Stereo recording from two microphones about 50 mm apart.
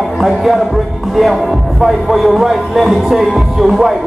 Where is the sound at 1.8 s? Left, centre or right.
Centre.